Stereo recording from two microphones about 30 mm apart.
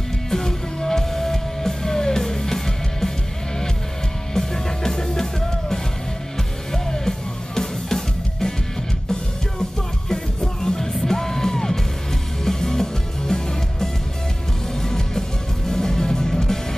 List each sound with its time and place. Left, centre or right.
0.3 s music: centre
4.3 s music: centre
10.0 s music: centre